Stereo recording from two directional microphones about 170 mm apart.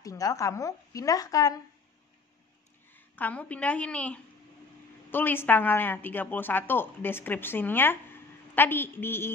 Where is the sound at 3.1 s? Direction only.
10° left (ahead or behind).